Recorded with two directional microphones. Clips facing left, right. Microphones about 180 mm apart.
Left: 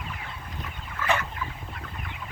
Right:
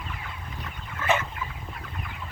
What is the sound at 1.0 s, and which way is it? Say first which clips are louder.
Fowl: right 1 dB; 20° right (ahead or behind).